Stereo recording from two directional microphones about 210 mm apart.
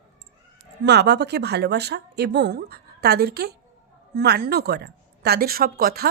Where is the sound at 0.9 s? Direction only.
55° right (ahead or behind).